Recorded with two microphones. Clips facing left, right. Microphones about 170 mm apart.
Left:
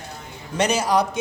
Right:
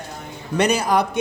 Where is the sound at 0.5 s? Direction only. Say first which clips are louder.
Right 1 dB; 55° right (ahead or behind).